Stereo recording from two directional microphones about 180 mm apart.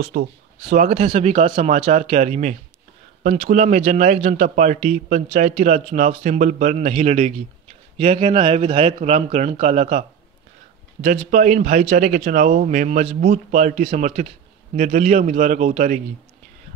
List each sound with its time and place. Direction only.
0.0 s a man's voice: 45° right (ahead or behind)